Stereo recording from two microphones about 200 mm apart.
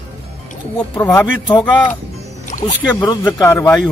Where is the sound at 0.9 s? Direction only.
15° left (ahead or behind).